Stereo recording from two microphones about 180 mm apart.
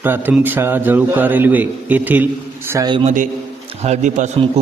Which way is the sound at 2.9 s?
30° right (ahead or behind).